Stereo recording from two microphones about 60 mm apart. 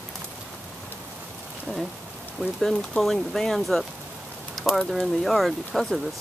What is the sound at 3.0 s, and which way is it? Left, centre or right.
Speech, centre.